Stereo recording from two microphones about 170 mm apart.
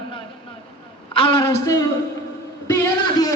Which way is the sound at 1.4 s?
20° left (ahead or behind).